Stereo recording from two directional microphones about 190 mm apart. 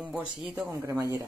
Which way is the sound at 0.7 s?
15° right (ahead or behind).